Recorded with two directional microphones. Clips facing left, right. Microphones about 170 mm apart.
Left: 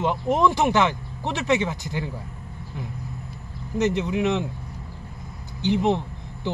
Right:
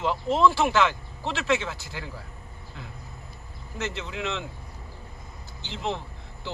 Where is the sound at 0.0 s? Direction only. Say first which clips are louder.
Left 1 dB; 15° left (ahead or behind).